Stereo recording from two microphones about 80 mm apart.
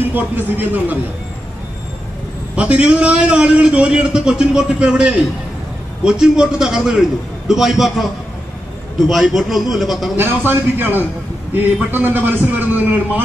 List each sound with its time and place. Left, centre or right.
0.1 s a man's voice: right
2.5 s a man's voice: centre
10.1 s a man's voice: right